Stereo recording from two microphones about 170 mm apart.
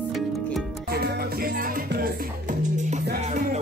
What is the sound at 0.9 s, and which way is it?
Music, 70° right (ahead or behind).